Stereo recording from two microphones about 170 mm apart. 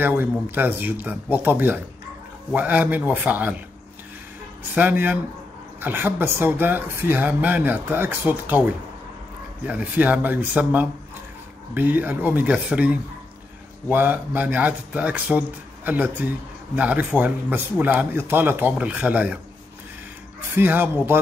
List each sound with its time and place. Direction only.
0.0 s speech: 10° right (ahead or behind)
4.7 s speech: 10° right (ahead or behind)
9.7 s speech: 10° right (ahead or behind)
20.5 s speech: 10° right (ahead or behind)